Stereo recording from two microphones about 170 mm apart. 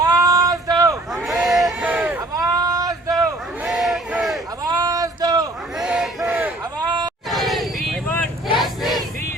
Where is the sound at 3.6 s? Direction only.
Centre (ahead or behind).